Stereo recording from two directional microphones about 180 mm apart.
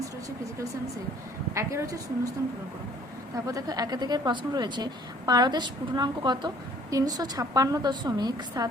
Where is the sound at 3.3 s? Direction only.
20° right (ahead or behind).